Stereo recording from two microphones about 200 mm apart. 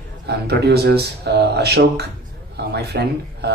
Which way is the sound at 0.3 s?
55° right (ahead or behind).